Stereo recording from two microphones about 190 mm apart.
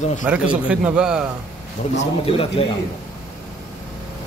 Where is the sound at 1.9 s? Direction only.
30° left (ahead or behind).